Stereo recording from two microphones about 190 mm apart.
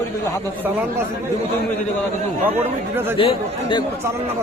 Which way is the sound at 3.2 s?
30° left (ahead or behind).